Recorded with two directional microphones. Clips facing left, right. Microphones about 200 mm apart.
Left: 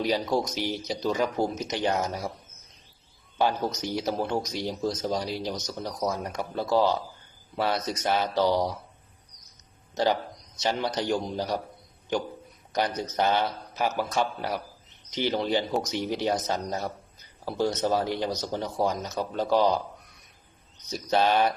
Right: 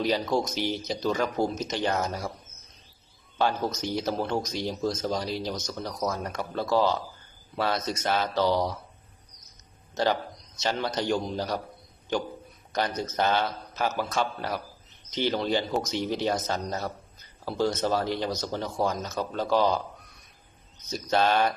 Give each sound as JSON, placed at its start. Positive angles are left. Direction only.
{"t": 0.0, "sound": "speech", "side_deg": 15}
{"t": 3.3, "sound": "speech", "side_deg": 15}
{"t": 9.9, "sound": "a man's voice", "side_deg": 15}
{"t": 12.7, "sound": "speech", "side_deg": 15}
{"t": 21.1, "sound": "speech", "side_deg": 15}